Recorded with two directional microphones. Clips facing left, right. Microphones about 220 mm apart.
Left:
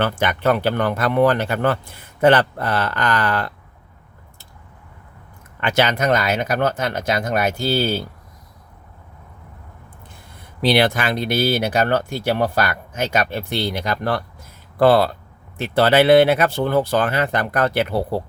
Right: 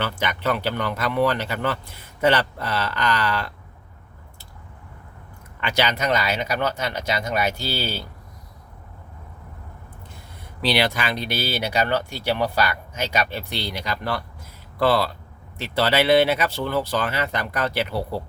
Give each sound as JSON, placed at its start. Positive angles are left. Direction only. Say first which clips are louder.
{"t": 0.0, "sound": "speech", "louder": "left 6 dB", "side_deg": 50}
{"t": 5.5, "sound": "speech", "louder": "left 5 dB", "side_deg": 50}
{"t": 10.6, "sound": "speech", "louder": "left 5 dB", "side_deg": 50}